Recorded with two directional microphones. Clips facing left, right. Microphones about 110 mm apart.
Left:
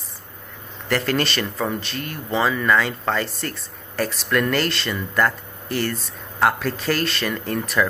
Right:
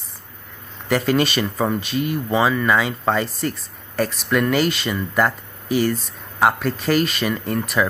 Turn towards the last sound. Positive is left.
turn(degrees=0)  # may be behind; listen again after turning